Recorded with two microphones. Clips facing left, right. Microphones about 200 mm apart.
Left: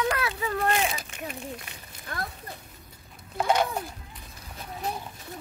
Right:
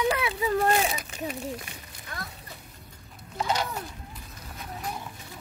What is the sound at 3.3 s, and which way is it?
Speech, 55° left (ahead or behind).